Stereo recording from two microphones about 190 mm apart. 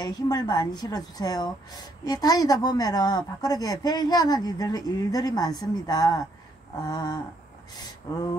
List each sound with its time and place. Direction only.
0.0 s a woman's voice: 20° left (ahead or behind)